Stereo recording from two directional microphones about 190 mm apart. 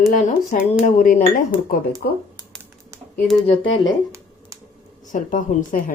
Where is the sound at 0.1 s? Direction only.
40° left (ahead or behind).